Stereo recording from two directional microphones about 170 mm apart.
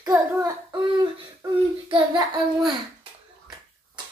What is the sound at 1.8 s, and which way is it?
Child singing, 30° right (ahead or behind).